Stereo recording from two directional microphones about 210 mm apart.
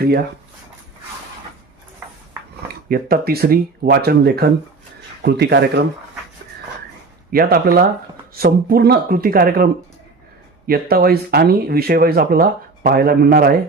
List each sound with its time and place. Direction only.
2.9 s speech: 45° right (ahead or behind)
7.3 s speech: 45° right (ahead or behind)
10.7 s speech: 45° right (ahead or behind)